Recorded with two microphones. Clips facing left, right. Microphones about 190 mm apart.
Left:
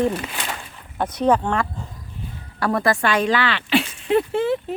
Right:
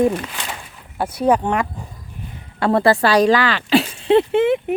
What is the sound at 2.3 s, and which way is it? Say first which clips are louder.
Speech: right 5 dB; 25° right (ahead or behind).